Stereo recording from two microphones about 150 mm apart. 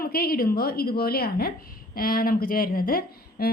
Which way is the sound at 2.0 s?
75° left (ahead or behind).